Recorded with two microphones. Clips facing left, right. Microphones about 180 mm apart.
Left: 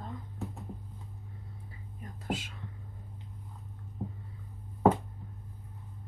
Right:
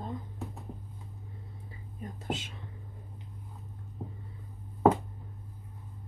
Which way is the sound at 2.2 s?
25° right (ahead or behind).